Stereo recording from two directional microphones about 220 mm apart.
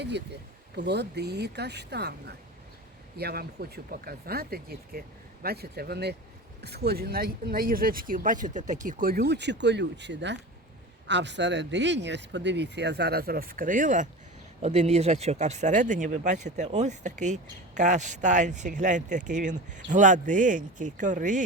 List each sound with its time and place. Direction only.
0.8 s speech: 50° right (ahead or behind)